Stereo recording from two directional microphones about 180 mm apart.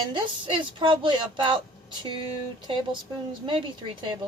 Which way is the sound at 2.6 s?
25° right (ahead or behind).